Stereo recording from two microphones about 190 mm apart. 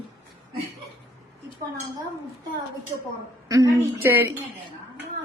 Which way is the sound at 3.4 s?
15° right (ahead or behind).